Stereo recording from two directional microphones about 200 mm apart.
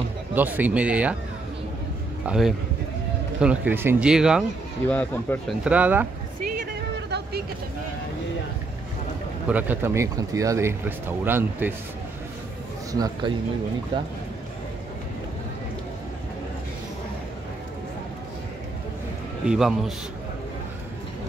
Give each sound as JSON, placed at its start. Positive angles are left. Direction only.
{"t": 0.3, "sound": "speech", "side_deg": -10}
{"t": 2.2, "sound": "speech", "side_deg": 0}
{"t": 4.8, "sound": "speech", "side_deg": 10}
{"t": 5.6, "sound": "speech", "side_deg": -5}
{"t": 7.1, "sound": "vehicle", "side_deg": -55}
{"t": 9.5, "sound": "speech", "side_deg": -10}
{"t": 12.9, "sound": "speech", "side_deg": -20}
{"t": 19.4, "sound": "a man's voice", "side_deg": -5}